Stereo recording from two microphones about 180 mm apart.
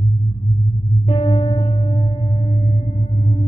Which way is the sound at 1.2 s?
30° left (ahead or behind).